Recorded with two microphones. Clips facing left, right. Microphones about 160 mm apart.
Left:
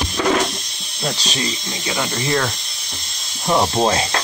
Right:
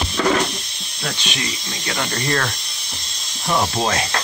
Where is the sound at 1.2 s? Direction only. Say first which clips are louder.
Left 3 dB; 40° left (ahead or behind).